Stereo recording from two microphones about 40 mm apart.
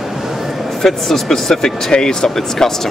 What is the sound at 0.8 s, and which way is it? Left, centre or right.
Speech, centre.